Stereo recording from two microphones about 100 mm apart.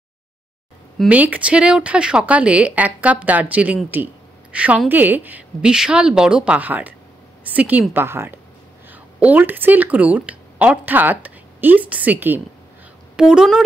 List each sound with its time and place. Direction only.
1.0 s speech: 15° right (ahead or behind)
13.1 s a woman's voice: 5° right (ahead or behind)